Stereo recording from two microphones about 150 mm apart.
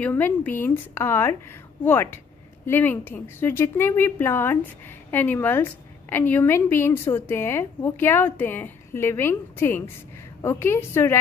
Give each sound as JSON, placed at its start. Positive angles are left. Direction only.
{"t": 0.0, "sound": "a woman's voice", "side_deg": 10}